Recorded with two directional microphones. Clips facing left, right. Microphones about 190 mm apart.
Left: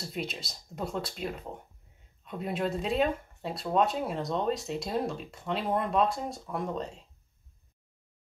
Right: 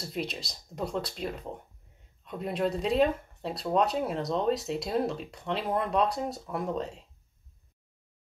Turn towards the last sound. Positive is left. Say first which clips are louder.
# right 2 dB
turn(degrees=0)  # may be behind; listen again after turning